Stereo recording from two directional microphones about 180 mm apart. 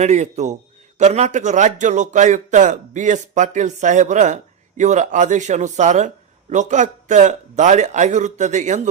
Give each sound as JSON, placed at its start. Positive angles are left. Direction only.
{"t": 0.0, "sound": "a man's voice", "side_deg": -40}